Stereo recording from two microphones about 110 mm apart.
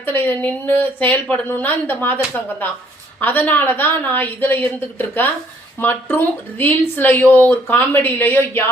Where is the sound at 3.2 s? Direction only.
15° left (ahead or behind).